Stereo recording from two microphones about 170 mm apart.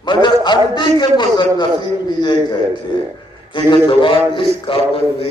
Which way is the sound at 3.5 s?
30° left (ahead or behind).